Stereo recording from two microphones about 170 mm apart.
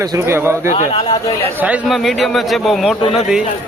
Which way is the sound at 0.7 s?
30° left (ahead or behind).